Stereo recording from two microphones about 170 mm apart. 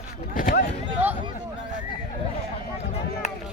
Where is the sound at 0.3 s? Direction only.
55° left (ahead or behind).